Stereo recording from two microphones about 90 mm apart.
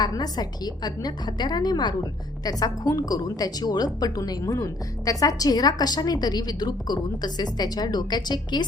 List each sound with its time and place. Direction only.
0.0 s a woman's voice: 50° left (ahead or behind)